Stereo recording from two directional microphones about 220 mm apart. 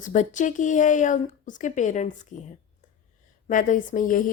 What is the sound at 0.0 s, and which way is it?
Speech, 35° left (ahead or behind).